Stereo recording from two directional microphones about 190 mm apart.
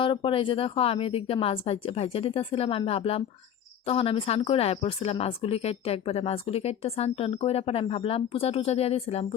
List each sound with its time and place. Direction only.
0.0 s speech: 25° left (ahead or behind)